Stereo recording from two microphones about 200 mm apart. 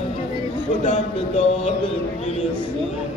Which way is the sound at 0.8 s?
35° left (ahead or behind).